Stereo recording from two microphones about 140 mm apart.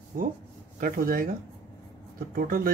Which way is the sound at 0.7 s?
90° right.